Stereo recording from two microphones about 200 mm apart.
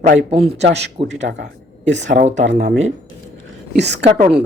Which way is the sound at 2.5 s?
55° right (ahead or behind).